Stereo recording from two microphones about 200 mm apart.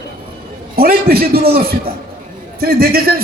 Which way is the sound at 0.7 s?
50° right (ahead or behind).